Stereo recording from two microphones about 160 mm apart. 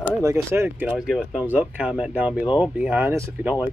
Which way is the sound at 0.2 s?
15° right (ahead or behind).